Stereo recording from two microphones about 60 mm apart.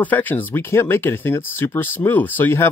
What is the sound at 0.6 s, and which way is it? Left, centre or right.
Speech, left.